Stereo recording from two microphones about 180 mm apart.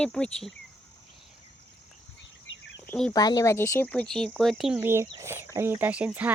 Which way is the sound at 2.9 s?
5° left (ahead or behind).